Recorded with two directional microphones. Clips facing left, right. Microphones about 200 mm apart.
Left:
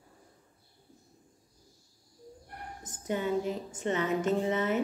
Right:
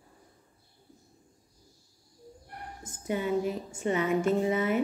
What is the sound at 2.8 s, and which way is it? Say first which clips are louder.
A woman's voice: right 1 dB; 10° right (ahead or behind).